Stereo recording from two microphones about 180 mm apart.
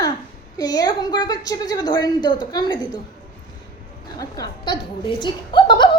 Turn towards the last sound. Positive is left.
turn(degrees=25)  # may be behind; listen again after turning